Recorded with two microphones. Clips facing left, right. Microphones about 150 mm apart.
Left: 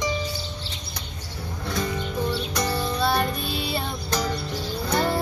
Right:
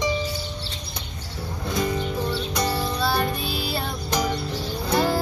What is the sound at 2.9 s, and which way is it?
Music, centre (ahead or behind).